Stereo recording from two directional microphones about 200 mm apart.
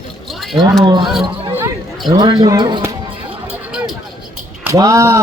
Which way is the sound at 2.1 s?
20° right (ahead or behind).